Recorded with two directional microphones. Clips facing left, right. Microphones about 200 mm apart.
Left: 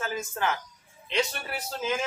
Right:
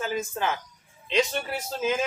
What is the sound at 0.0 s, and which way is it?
A man's voice, 20° right (ahead or behind).